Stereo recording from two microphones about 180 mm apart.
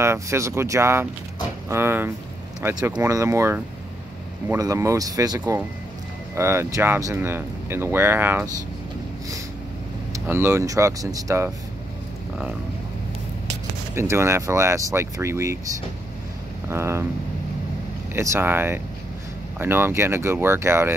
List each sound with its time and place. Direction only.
0.0 s speech: 15° right (ahead or behind)
10.1 s speech: 15° right (ahead or behind)
13.9 s speech: 15° right (ahead or behind)
16.6 s speech: 15° right (ahead or behind)
18.1 s speech: 15° right (ahead or behind)